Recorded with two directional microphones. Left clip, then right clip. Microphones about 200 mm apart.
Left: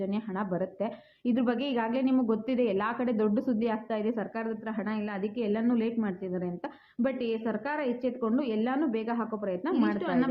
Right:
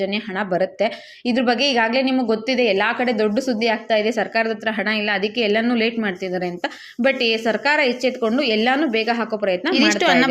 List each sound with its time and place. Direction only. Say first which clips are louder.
0.0 s a woman's voice: right 11 dB; 10° right (ahead or behind)